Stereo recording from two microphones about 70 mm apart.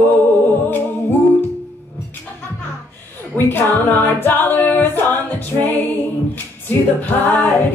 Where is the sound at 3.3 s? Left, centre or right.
Left.